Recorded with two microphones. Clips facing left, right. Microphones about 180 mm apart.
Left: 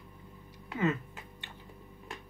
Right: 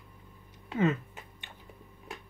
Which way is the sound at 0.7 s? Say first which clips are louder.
Right 3 dB; 20° right (ahead or behind).